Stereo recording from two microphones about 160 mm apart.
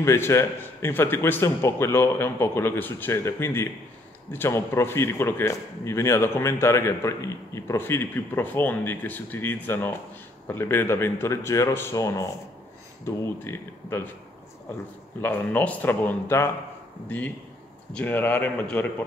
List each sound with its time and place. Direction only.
0.0 s speech: 15° left (ahead or behind)
15.2 s speech: 10° left (ahead or behind)
17.9 s speech: 10° left (ahead or behind)